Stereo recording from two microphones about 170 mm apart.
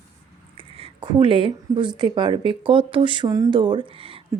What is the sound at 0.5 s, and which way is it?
Speech, 30° right (ahead or behind).